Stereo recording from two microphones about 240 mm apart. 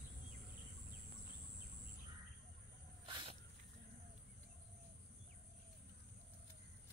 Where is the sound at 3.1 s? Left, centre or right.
Centre.